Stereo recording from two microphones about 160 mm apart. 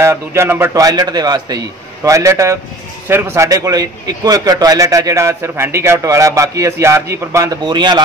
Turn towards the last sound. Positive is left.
turn(degrees=-25)  # may be behind; listen again after turning